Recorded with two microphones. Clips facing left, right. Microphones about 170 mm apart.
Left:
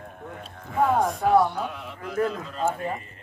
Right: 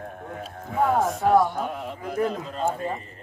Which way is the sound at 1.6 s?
45° right (ahead or behind).